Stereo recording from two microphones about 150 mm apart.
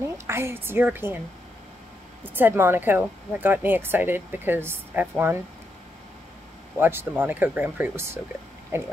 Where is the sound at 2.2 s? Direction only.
15° right (ahead or behind).